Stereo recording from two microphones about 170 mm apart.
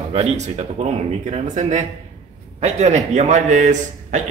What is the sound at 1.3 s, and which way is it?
A man's voice, 45° right (ahead or behind).